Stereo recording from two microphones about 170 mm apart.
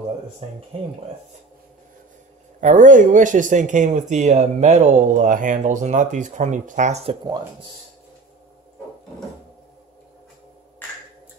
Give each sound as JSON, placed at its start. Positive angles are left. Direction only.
{"t": 2.6, "sound": "speech", "side_deg": -45}